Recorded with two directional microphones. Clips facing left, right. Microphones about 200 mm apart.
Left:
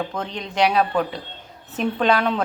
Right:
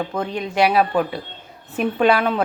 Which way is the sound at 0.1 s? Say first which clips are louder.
Right 5 dB; 5° right (ahead or behind).